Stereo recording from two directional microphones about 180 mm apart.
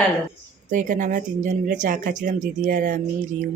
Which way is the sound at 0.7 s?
45° right (ahead or behind).